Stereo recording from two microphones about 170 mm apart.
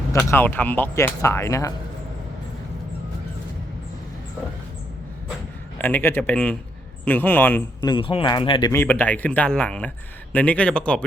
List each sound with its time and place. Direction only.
0.1 s speech: 15° left (ahead or behind)
5.8 s speech: 10° left (ahead or behind)
7.8 s speech: 25° left (ahead or behind)
8.7 s speech: 10° left (ahead or behind)